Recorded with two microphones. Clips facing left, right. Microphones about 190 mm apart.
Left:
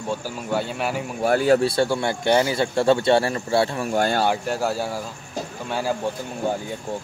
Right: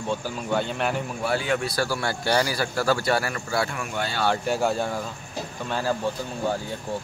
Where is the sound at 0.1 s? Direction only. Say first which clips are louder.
Left 1 dB; 10° left (ahead or behind).